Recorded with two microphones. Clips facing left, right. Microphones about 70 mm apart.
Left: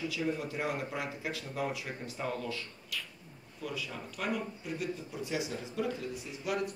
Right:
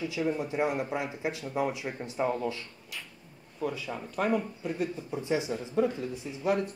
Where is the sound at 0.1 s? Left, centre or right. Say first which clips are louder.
Right 4 dB; right.